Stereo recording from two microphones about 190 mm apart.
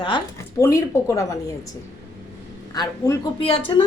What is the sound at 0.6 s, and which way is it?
A woman's voice, 15° left (ahead or behind).